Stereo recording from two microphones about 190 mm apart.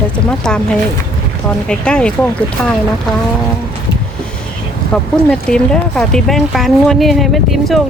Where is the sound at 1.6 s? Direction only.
5° left (ahead or behind).